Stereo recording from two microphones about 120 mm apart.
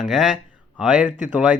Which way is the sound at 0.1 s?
Centre (ahead or behind).